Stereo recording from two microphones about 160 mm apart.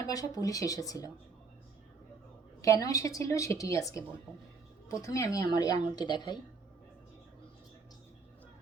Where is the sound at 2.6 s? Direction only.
20° left (ahead or behind).